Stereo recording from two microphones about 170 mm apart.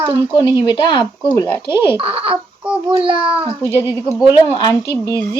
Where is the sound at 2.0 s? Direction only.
35° right (ahead or behind).